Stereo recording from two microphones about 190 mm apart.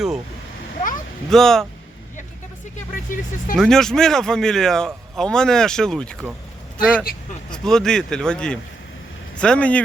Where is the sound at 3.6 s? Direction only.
5° left (ahead or behind).